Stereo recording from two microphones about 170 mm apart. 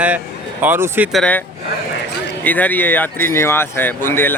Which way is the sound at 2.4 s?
10° left (ahead or behind).